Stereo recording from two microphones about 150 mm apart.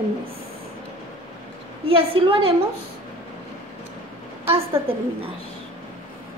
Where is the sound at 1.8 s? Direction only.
35° right (ahead or behind).